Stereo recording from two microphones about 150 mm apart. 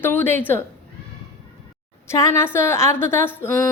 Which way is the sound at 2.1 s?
20° left (ahead or behind).